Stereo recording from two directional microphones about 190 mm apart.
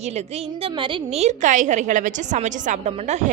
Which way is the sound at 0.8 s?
35° right (ahead or behind).